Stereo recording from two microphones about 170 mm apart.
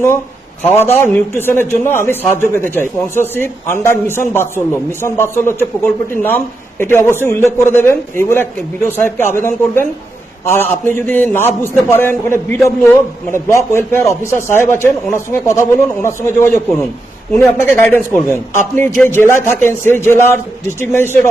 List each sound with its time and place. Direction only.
0.6 s a man's voice: 15° left (ahead or behind)